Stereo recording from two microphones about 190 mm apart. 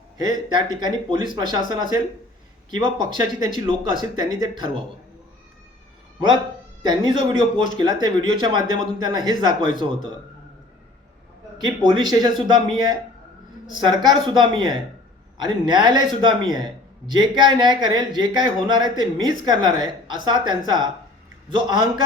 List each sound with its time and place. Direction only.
0.5 s a man's voice: 25° right (ahead or behind)
6.1 s a man's voice: 20° right (ahead or behind)
11.5 s a man's voice: 20° right (ahead or behind)